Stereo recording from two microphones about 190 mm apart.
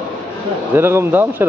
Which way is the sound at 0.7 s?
10° right (ahead or behind).